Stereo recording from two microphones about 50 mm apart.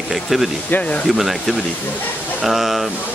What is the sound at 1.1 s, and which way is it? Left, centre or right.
Speech, centre.